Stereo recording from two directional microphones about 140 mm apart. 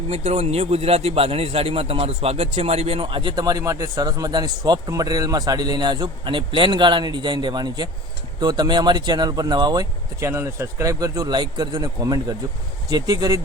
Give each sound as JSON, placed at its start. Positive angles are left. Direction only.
{"t": 0.1, "sound": "a man's voice", "side_deg": -50}